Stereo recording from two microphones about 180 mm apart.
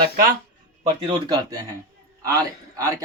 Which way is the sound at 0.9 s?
30° right (ahead or behind).